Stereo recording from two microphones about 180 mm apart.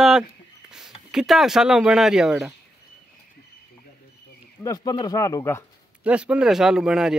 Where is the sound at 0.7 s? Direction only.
5° right (ahead or behind).